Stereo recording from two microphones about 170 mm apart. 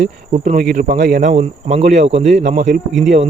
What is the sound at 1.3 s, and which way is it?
Speech, 40° right (ahead or behind).